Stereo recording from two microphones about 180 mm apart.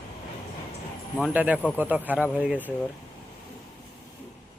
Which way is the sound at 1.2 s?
10° right (ahead or behind).